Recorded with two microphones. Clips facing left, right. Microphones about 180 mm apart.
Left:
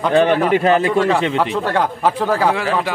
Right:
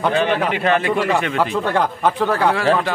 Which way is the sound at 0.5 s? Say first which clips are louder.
Left 4 dB; 35° left (ahead or behind).